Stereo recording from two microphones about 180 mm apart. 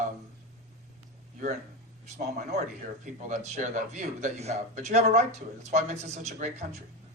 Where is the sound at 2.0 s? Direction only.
40° right (ahead or behind).